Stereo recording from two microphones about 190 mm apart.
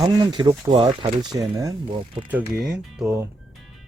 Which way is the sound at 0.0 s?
20° right (ahead or behind).